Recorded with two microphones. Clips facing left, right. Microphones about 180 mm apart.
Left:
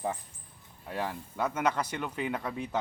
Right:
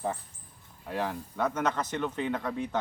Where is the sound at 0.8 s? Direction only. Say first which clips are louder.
Right 2 dB; centre (ahead or behind).